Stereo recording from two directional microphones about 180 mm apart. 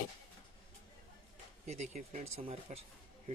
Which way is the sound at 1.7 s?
40° right (ahead or behind).